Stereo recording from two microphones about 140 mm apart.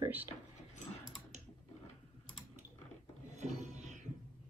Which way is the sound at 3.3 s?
55° right (ahead or behind).